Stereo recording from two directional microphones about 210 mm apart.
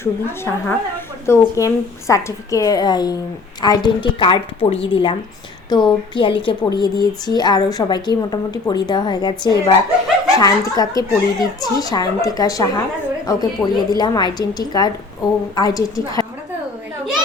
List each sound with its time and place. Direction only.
0.0 s a woman's voice: 10° left (ahead or behind)